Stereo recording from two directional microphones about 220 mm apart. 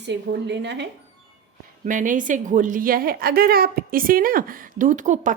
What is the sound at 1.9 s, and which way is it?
A woman's voice, 35° right (ahead or behind).